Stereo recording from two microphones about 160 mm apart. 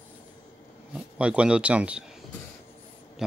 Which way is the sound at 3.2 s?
Centre (ahead or behind).